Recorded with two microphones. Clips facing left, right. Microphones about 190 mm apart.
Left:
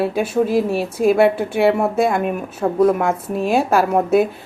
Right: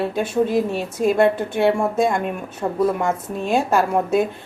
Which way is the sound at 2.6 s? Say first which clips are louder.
Left 4 dB; 50° left (ahead or behind).